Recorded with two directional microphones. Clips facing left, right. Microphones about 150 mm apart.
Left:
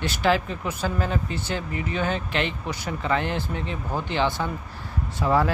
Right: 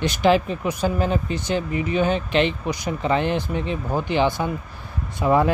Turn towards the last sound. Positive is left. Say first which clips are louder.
# right 3 dB
turn(degrees=-20)  # may be behind; listen again after turning